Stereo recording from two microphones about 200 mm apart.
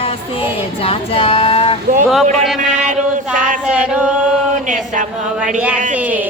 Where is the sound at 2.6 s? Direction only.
40° right (ahead or behind).